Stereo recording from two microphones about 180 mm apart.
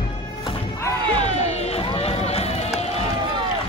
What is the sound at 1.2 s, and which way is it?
Run, 35° left (ahead or behind).